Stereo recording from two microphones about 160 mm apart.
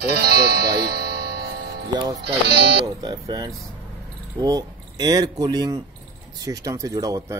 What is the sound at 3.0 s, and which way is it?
A man's voice, 25° right (ahead or behind).